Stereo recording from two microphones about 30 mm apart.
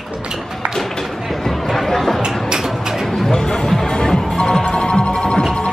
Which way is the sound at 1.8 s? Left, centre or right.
Centre.